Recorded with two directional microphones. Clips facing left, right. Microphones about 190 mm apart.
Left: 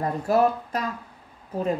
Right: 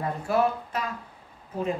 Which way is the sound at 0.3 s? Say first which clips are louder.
Left 3 dB; 40° left (ahead or behind).